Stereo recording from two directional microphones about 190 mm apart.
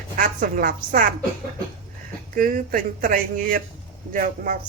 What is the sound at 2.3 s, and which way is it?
A woman's voice, 45° right (ahead or behind).